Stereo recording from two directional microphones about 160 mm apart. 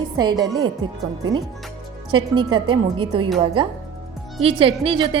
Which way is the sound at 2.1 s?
30° right (ahead or behind).